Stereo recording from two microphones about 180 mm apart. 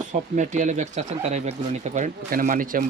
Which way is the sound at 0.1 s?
40° right (ahead or behind).